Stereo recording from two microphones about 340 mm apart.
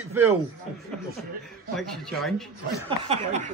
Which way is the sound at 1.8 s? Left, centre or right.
Centre.